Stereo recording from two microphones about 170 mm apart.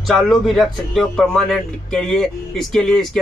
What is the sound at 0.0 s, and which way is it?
Speech, centre (ahead or behind).